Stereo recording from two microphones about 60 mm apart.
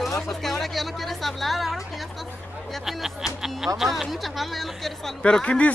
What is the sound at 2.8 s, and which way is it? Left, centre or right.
Speech, centre.